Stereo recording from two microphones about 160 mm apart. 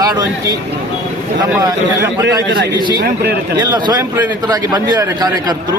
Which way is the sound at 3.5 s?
25° right (ahead or behind).